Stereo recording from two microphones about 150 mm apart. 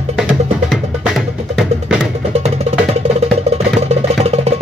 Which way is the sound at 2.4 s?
45° right (ahead or behind).